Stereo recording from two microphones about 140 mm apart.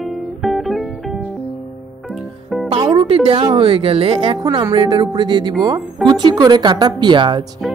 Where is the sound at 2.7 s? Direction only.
40° right (ahead or behind).